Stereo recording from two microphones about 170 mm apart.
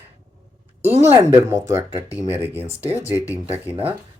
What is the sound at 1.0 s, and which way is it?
Speech, 15° right (ahead or behind).